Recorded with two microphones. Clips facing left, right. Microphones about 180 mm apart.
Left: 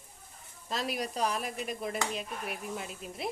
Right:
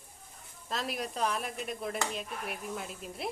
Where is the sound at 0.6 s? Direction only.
Centre (ahead or behind).